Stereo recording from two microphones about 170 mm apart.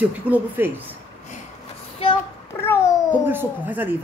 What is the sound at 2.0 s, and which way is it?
Child singing, 35° left (ahead or behind).